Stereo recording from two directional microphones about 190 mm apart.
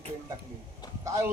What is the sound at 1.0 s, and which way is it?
Speech, 15° right (ahead or behind).